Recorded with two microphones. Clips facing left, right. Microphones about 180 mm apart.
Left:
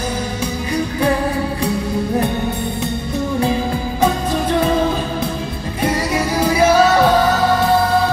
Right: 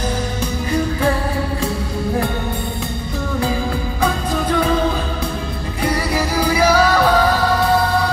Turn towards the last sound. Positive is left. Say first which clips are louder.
# left 2 dB
turn(degrees=25)  # may be behind; listen again after turning